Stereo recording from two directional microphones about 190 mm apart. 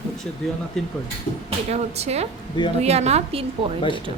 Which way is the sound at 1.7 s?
35° right (ahead or behind).